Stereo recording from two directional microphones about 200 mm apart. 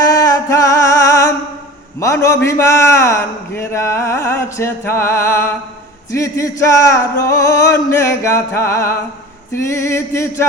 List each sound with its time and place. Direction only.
0.1 s music: 15° left (ahead or behind)
2.0 s a man's voice: 15° left (ahead or behind)